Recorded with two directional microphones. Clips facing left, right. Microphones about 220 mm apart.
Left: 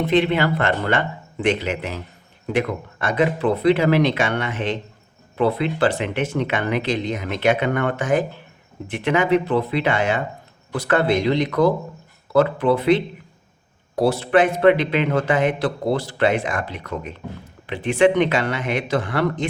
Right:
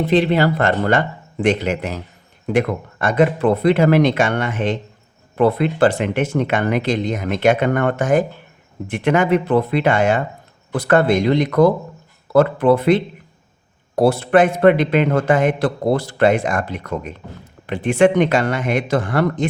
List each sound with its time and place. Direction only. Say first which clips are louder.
0.1 s a man's voice: right 3 dB; 35° right (ahead or behind)